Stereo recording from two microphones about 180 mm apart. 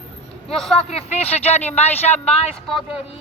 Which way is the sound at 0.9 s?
35° left (ahead or behind).